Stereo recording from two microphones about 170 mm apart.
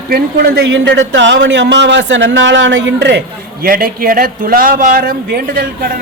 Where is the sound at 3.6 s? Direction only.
60° right (ahead or behind).